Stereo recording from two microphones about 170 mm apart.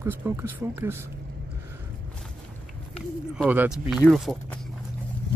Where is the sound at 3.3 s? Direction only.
10° right (ahead or behind).